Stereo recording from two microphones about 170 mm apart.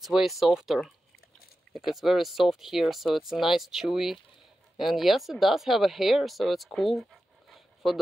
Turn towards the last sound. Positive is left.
turn(degrees=0)  # may be behind; listen again after turning